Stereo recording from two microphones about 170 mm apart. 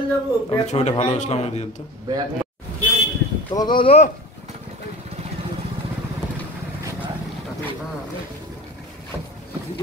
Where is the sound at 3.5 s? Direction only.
25° left (ahead or behind).